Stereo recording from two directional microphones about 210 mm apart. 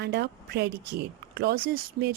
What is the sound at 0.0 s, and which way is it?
Speech, 50° right (ahead or behind).